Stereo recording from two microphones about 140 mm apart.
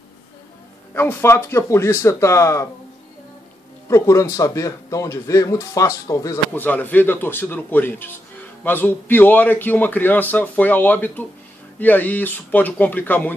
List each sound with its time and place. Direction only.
0.9 s speech: 15° left (ahead or behind)
3.9 s a man's voice: 20° left (ahead or behind)